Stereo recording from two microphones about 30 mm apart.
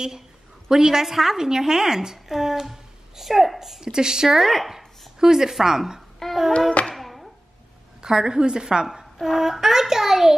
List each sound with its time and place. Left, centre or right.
0.7 s a woman's voice: centre
3.8 s a woman's voice: right
4.4 s speech: centre
6.2 s child singing: centre
7.0 s a sound: centre
8.0 s a woman's voice: right
8.8 s a woman's voice: centre